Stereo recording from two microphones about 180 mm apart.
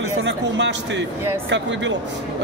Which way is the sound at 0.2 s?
75° right (ahead or behind).